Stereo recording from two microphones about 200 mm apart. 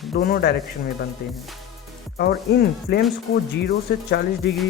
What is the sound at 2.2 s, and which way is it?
Speech, 55° left (ahead or behind).